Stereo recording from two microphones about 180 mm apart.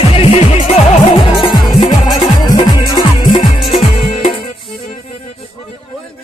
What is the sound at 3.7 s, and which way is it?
Music, 35° left (ahead or behind).